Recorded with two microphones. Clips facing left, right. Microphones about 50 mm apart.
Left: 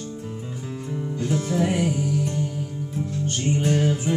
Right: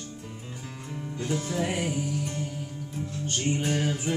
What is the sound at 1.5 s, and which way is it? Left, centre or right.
Music, centre.